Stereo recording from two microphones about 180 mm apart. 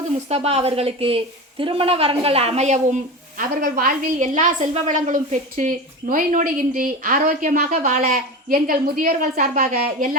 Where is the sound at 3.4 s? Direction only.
50° right (ahead or behind).